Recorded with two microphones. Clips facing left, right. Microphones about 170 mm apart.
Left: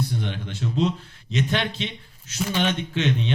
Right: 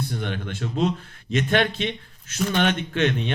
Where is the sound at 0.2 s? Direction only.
55° right (ahead or behind).